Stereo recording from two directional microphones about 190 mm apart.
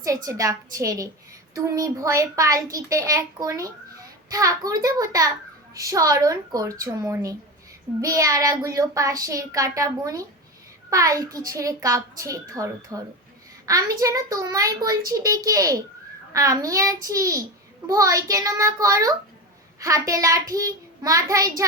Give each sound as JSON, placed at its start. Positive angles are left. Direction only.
{"t": 0.0, "sound": "a child's voice", "side_deg": -15}